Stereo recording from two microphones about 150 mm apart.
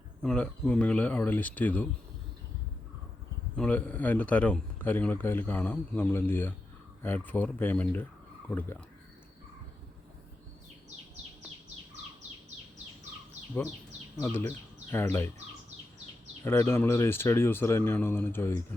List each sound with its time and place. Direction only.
0.2 s speech: 5° left (ahead or behind)
3.5 s speech: 10° left (ahead or behind)
14.2 s speech: 15° left (ahead or behind)
16.4 s speech: 15° left (ahead or behind)